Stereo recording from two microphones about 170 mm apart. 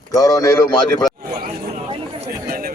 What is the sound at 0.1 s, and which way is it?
Speech, 20° left (ahead or behind).